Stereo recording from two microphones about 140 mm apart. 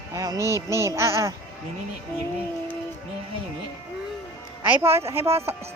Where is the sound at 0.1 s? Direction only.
25° right (ahead or behind).